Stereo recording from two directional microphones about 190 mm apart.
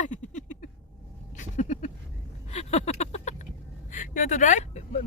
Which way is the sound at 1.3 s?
40° left (ahead or behind).